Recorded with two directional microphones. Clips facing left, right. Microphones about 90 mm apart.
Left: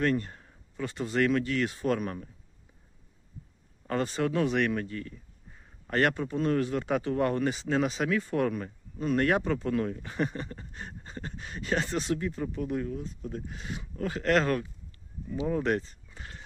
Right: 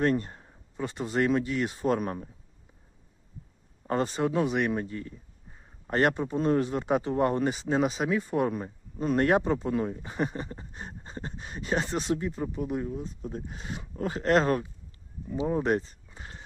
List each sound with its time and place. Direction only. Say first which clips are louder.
0.0 s speech: right 2 dB; 25° right (ahead or behind)
3.8 s speech: right 2 dB; 25° right (ahead or behind)
16.0 s a sound: right 1 dB; 25° right (ahead or behind)